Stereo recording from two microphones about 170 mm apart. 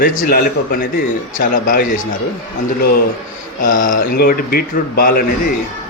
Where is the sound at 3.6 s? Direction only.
50° left (ahead or behind).